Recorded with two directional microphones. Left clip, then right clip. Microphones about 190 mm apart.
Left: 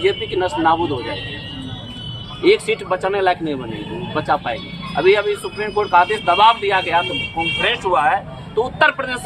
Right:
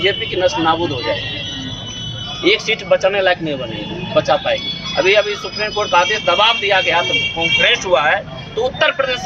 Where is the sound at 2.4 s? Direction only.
15° left (ahead or behind).